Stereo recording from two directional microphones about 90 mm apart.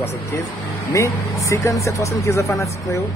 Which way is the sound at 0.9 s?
35° left (ahead or behind).